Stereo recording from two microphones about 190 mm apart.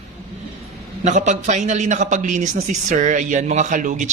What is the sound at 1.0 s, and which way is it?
A man's voice, 40° right (ahead or behind).